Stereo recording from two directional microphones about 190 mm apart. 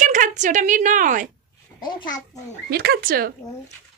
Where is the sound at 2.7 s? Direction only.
55° right (ahead or behind).